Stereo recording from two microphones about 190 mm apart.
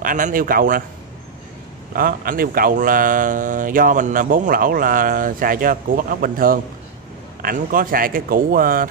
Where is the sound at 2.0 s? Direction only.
50° right (ahead or behind).